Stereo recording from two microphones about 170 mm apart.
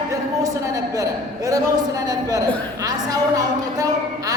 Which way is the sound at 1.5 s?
20° right (ahead or behind).